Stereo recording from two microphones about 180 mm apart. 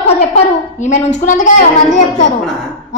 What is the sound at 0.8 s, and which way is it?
A woman's voice, 40° left (ahead or behind).